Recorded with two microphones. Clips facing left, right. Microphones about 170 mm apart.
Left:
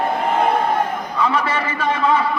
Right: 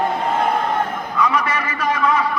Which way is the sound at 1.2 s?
30° left (ahead or behind).